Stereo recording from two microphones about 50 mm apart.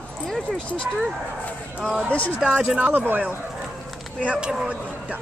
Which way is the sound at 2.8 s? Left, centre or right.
Right.